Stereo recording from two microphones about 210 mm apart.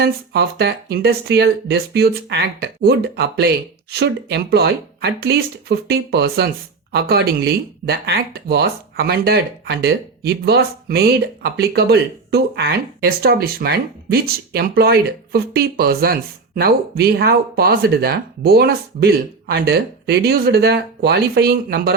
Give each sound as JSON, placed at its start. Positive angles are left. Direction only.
{"t": 0.0, "sound": "speech", "side_deg": -50}